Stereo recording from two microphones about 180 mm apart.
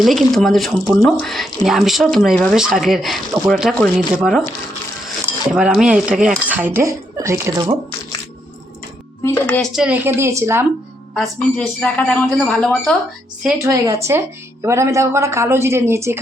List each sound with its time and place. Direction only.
0.0 s a woman's voice: centre (ahead or behind); by 7.8 s 20° right (ahead or behind)
9.2 s speech: 15° left (ahead or behind)
9.6 s speech: 5° right (ahead or behind)
11.1 s a woman's voice: 5° left (ahead or behind)
13.6 s speech: 15° right (ahead or behind)